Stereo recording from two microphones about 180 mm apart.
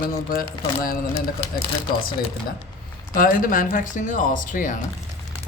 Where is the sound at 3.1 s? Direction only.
50° left (ahead or behind).